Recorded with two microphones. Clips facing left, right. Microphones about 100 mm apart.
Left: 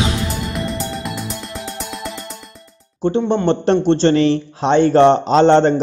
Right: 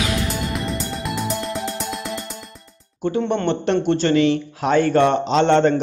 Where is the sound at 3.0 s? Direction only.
25° left (ahead or behind).